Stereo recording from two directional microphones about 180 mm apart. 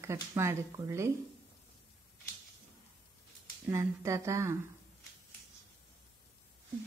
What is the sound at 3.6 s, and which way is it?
Speech, 15° right (ahead or behind).